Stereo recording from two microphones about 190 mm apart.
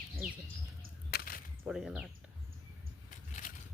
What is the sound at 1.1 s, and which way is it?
Whip, 50° left (ahead or behind).